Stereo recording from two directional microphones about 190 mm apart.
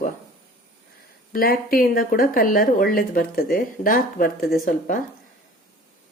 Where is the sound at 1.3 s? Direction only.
50° left (ahead or behind).